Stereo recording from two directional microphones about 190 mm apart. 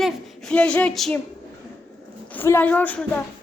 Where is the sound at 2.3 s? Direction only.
10° left (ahead or behind).